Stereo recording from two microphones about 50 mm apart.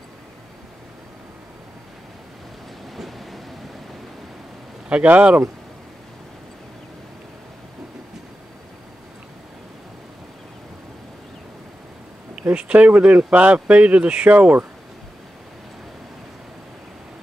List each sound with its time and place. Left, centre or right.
3.0 s train: centre
4.8 s speech: right
12.5 s speech: right